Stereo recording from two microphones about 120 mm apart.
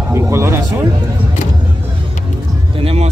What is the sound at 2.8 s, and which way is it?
Speech, 55° right (ahead or behind).